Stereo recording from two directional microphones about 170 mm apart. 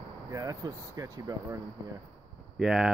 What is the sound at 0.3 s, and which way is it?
Speech, 20° right (ahead or behind).